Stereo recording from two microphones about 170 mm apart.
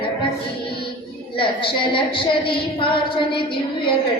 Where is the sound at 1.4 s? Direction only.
30° left (ahead or behind).